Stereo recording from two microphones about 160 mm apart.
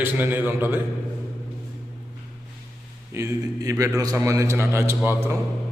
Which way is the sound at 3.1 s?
15° right (ahead or behind).